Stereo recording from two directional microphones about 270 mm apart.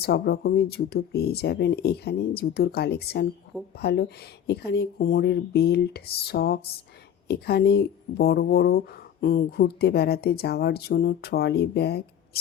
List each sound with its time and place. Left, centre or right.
0.0 s speech: left